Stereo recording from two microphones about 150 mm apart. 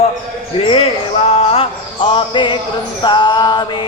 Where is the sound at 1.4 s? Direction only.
40° left (ahead or behind).